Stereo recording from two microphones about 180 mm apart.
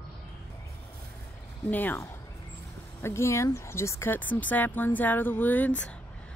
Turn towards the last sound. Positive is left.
turn(degrees=10)  # may be behind; listen again after turning